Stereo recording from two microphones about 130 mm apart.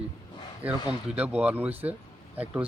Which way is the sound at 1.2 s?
10° right (ahead or behind).